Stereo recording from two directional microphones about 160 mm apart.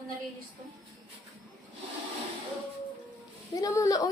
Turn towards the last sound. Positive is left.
turn(degrees=20)  # may be behind; listen again after turning